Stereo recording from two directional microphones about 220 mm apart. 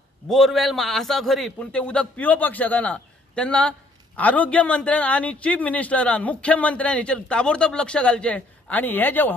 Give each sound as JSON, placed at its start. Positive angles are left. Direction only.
{"t": 0.3, "sound": "a man's voice", "side_deg": 0}